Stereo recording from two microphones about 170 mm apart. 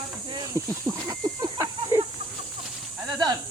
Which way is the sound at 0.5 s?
20° right (ahead or behind).